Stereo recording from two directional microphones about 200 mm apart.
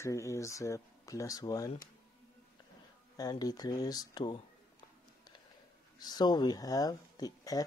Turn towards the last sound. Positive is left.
turn(degrees=20)  # may be behind; listen again after turning